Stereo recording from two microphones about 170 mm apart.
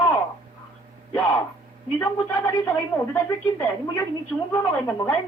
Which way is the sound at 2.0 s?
15° left (ahead or behind).